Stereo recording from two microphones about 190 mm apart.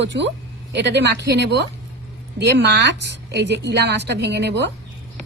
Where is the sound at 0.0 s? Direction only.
70° right (ahead or behind).